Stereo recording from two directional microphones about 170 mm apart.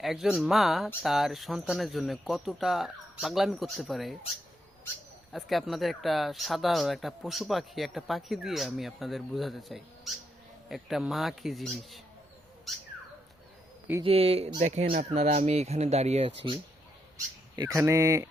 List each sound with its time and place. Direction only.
0.0 s speech: centre (ahead or behind)
5.3 s speech: centre (ahead or behind)
14.0 s speech: 35° right (ahead or behind)
17.6 s speech: 20° right (ahead or behind)